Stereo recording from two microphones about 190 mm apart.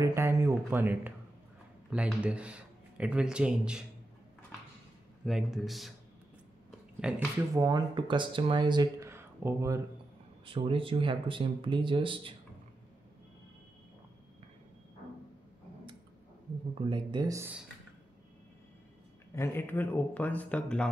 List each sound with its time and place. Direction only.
0.0 s a sound: 15° right (ahead or behind)
1.9 s speech: 5° right (ahead or behind)
5.2 s speech: centre (ahead or behind)
7.0 s speech: 5° right (ahead or behind)
7.5 s speech: 20° right (ahead or behind)
9.1 s a sound: 15° right (ahead or behind)
10.4 s speech: 30° right (ahead or behind)
16.9 s speech: 20° right (ahead or behind)
19.3 s speech: 10° left (ahead or behind)